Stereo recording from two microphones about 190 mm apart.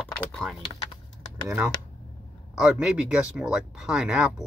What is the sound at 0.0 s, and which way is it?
Typing, centre (ahead or behind).